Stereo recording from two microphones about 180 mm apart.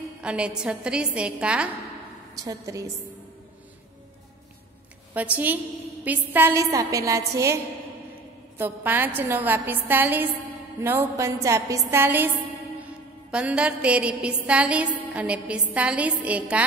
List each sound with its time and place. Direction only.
0.2 s a woman's voice: 5° right (ahead or behind)
2.3 s a woman's voice: 20° right (ahead or behind)
5.1 s music: 10° right (ahead or behind)
8.5 s music: 10° right (ahead or behind)
13.3 s music: 5° right (ahead or behind)